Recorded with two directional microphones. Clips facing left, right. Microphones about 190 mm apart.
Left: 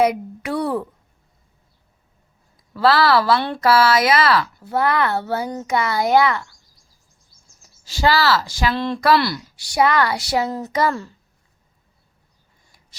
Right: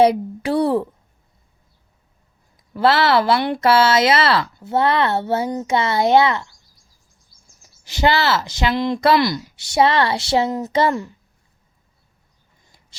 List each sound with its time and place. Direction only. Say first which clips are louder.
0.0 s speech: right 4 dB; 30° right (ahead or behind)
2.7 s speech: even; 25° right (ahead or behind)
7.9 s speech: even; 20° right (ahead or behind)
12.6 s a sound: right 2 dB; 25° right (ahead or behind)